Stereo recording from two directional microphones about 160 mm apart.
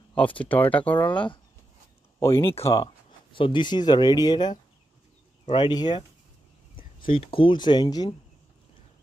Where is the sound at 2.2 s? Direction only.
15° left (ahead or behind).